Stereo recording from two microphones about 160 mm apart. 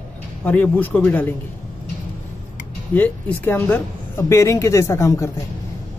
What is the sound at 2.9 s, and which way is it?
Speech, 10° left (ahead or behind).